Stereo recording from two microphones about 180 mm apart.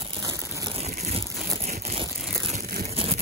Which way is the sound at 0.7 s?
35° right (ahead or behind).